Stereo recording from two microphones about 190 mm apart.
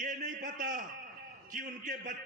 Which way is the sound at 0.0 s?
45° right (ahead or behind).